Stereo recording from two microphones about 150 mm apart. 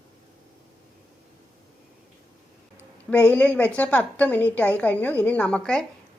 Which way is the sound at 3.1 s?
10° left (ahead or behind).